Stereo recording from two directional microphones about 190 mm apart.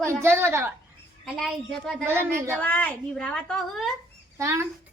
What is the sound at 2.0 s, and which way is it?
Speech, 15° right (ahead or behind).